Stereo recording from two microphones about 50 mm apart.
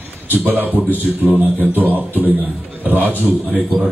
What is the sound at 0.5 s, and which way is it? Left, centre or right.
A man's voice, right.